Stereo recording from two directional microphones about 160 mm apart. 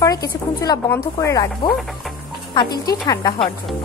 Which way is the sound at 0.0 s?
20° left (ahead or behind).